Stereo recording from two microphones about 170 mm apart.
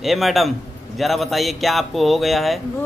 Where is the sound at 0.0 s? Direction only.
Centre (ahead or behind).